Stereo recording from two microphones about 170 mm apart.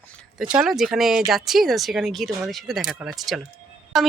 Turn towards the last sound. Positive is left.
turn(degrees=0)  # may be behind; listen again after turning